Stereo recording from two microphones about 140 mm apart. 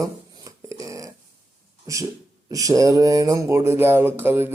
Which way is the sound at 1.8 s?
25° right (ahead or behind).